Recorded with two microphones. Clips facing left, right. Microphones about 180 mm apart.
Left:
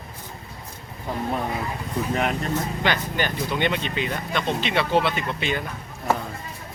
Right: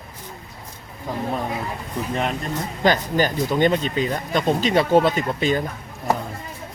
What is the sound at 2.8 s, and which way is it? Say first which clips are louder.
Speech: right 10 dB; 40° right (ahead or behind).